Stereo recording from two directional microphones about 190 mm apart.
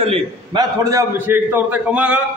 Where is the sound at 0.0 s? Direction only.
25° right (ahead or behind).